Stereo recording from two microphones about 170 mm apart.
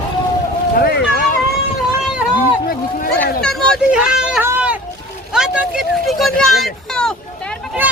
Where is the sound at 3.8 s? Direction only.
5° right (ahead or behind).